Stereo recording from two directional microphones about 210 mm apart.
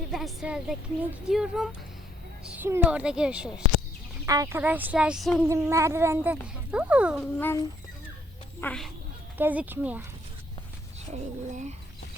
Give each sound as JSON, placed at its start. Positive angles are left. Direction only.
{"t": 0.1, "sound": "speech", "side_deg": 0}
{"t": 7.3, "sound": "speech", "side_deg": 10}
{"t": 8.6, "sound": "speech", "side_deg": 5}
{"t": 9.4, "sound": "speech", "side_deg": -10}
{"t": 11.1, "sound": "speech", "side_deg": -35}